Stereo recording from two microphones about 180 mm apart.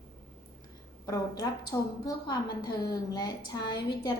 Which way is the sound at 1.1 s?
20° left (ahead or behind).